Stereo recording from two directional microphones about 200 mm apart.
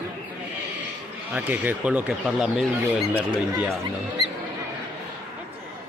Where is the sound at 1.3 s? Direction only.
10° right (ahead or behind).